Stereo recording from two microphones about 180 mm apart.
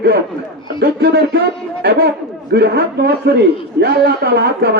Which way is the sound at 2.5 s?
60° right (ahead or behind).